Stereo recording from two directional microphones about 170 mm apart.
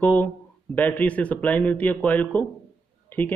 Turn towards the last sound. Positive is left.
turn(degrees=10)  # may be behind; listen again after turning